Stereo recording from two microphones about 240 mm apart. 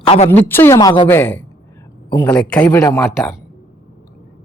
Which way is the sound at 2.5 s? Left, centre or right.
Centre.